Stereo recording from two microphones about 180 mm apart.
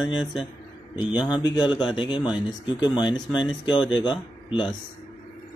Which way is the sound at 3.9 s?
25° left (ahead or behind).